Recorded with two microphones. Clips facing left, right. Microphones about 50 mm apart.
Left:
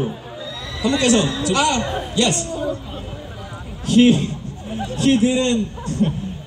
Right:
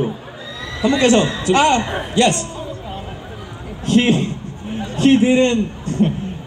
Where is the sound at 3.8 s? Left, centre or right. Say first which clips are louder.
Left 1 dB; right.